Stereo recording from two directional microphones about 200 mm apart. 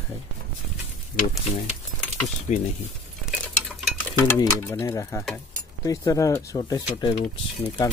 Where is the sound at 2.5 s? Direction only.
35° left (ahead or behind).